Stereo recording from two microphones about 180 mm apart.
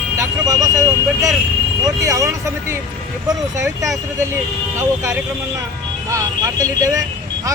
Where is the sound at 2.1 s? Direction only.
15° right (ahead or behind).